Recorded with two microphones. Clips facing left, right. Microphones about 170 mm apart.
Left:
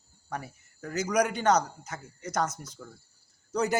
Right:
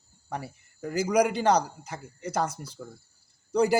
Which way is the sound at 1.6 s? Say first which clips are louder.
Right 2 dB; 10° right (ahead or behind).